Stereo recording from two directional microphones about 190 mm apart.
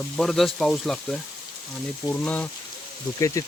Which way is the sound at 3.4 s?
15° left (ahead or behind).